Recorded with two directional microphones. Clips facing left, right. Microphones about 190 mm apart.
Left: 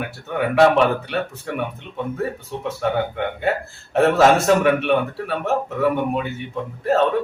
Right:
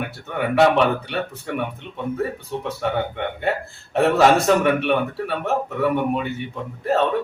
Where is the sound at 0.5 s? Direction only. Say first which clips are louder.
Left 1 dB; centre (ahead or behind).